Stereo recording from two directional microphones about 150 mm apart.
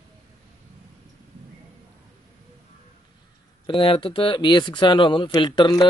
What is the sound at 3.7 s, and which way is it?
Speech, 35° left (ahead or behind).